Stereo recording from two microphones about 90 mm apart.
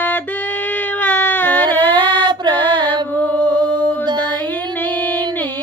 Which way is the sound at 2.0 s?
20° left (ahead or behind).